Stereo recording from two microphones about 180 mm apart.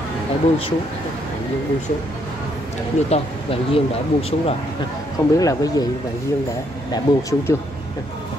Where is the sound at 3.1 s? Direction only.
30° left (ahead or behind).